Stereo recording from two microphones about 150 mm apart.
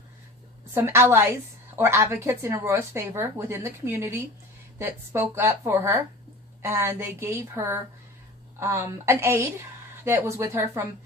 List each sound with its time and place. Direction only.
0.7 s a woman's voice: 15° right (ahead or behind)